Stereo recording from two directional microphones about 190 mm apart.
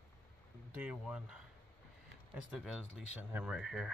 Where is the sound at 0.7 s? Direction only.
5° right (ahead or behind).